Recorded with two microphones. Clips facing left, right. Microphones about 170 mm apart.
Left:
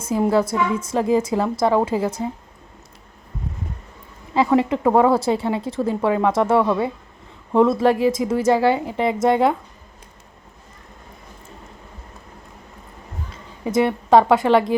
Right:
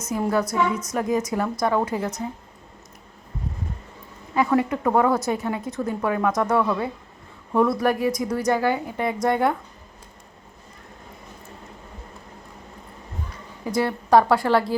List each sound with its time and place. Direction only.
0.0 s a woman's voice: 25° left (ahead or behind)
4.4 s a woman's voice: 25° left (ahead or behind)
13.3 s a woman's voice: 20° left (ahead or behind)